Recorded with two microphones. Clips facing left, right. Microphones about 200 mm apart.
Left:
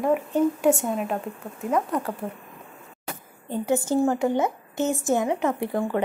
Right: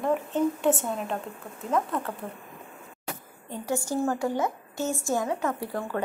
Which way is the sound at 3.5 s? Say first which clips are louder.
Left 6 dB; 20° left (ahead or behind).